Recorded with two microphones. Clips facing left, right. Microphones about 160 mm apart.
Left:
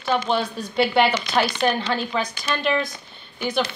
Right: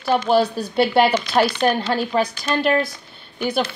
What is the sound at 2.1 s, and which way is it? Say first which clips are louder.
Speech: right 5 dB; 45° right (ahead or behind).